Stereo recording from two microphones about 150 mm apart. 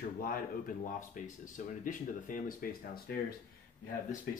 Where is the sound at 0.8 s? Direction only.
60° left (ahead or behind); by 3.2 s 75° left (ahead or behind).